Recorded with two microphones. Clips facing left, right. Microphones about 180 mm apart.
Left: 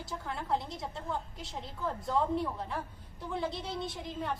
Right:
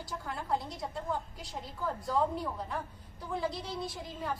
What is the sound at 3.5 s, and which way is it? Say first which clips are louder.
Speech: left 1 dB; 25° left (ahead or behind).